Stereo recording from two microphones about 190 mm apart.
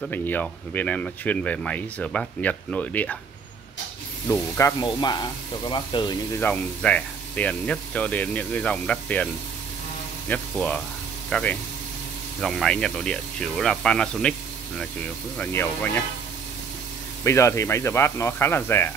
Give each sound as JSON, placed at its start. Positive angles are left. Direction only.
{"t": 0.0, "sound": "speech", "side_deg": 10}
{"t": 4.3, "sound": "speech", "side_deg": 15}
{"t": 6.3, "sound": "speech", "side_deg": 10}
{"t": 15.3, "sound": "speech", "side_deg": 10}
{"t": 17.2, "sound": "speech", "side_deg": 15}